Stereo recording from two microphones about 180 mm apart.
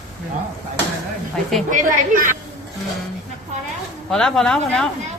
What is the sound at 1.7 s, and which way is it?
Speech, 50° right (ahead or behind).